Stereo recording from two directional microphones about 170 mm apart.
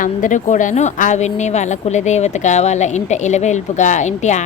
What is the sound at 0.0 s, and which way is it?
A woman's voice, 50° left (ahead or behind).